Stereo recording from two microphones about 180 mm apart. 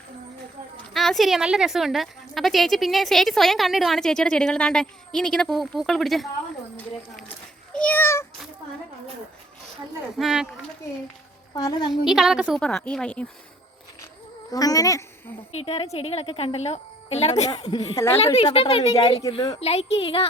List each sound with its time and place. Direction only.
0.9 s a woman's voice: centre (ahead or behind)
7.7 s a child's voice: 5° left (ahead or behind)
10.2 s a woman's voice: centre (ahead or behind)
11.5 s speech: 25° left (ahead or behind)
12.0 s a woman's voice: centre (ahead or behind)
14.5 s speech: 20° left (ahead or behind)
15.5 s speech: 35° left (ahead or behind); by 18.2 s 15° left (ahead or behind)
18.3 s speech: 30° left (ahead or behind)